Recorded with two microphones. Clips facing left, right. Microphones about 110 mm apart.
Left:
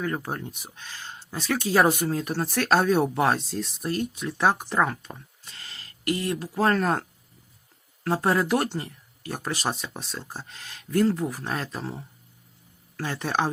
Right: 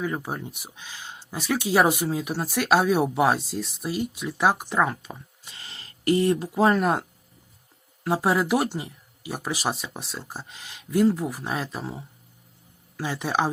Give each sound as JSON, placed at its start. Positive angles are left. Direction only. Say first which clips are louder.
{"t": 0.0, "sound": "speech", "louder": "even", "side_deg": -5}
{"t": 5.5, "sound": "a sound", "louder": "right 1 dB", "side_deg": -25}
{"t": 6.5, "sound": "speech", "louder": "left 2 dB", "side_deg": -15}
{"t": 8.0, "sound": "speech", "louder": "right 1 dB", "side_deg": -10}